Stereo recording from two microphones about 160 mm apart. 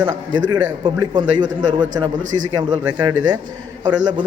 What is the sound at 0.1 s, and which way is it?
A man's voice, 25° right (ahead or behind).